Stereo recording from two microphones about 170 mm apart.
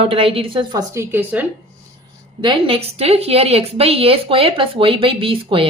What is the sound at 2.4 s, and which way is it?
A woman's voice, 30° right (ahead or behind).